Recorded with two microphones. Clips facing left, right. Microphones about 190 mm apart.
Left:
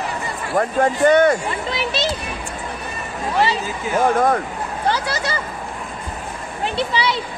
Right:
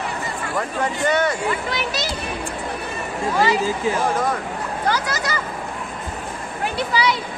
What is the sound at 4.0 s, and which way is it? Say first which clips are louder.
Speech: left 5 dB; 55° left (ahead or behind).